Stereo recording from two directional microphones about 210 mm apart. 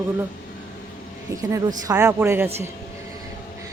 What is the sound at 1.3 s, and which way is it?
A woman's voice, 15° right (ahead or behind).